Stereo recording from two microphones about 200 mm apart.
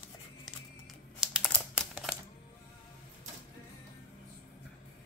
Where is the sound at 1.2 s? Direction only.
5° right (ahead or behind).